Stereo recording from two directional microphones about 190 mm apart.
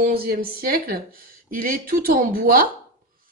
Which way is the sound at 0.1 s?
50° right (ahead or behind).